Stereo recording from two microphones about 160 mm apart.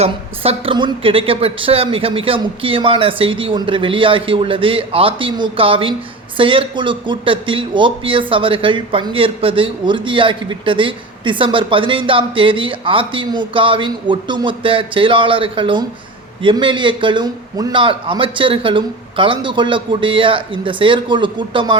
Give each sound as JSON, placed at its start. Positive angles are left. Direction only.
{"t": 0.0, "sound": "speech", "side_deg": -35}